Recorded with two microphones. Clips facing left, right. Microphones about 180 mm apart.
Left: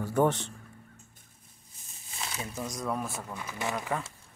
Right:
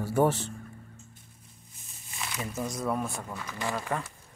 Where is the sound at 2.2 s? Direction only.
35° left (ahead or behind).